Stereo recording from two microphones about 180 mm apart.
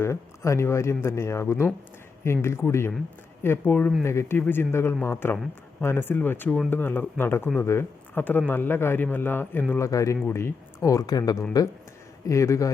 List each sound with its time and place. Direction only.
0.0 s speech: 15° left (ahead or behind)